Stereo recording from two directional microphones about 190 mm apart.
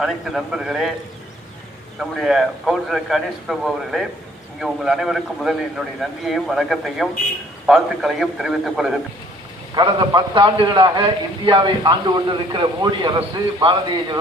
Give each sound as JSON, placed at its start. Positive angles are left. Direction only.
{"t": 0.0, "sound": "a man's voice", "side_deg": 0}
{"t": 2.0, "sound": "a man's voice", "side_deg": 0}
{"t": 9.7, "sound": "a man's voice", "side_deg": -25}